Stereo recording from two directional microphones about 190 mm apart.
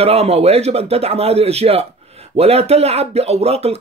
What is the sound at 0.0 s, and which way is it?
Speech, 35° right (ahead or behind).